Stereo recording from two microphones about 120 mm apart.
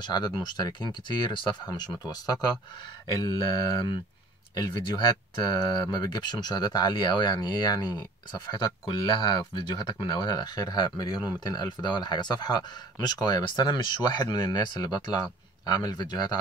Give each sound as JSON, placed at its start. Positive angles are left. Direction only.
{"t": 0.0, "sound": "speech", "side_deg": 35}